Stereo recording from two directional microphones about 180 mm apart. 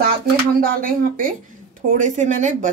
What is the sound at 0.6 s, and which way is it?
Speech, 50° right (ahead or behind).